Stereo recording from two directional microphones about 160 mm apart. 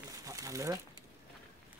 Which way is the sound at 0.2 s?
20° right (ahead or behind).